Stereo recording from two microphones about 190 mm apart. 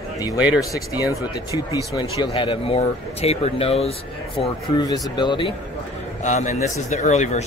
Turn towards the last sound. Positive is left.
turn(degrees=35)  # may be behind; listen again after turning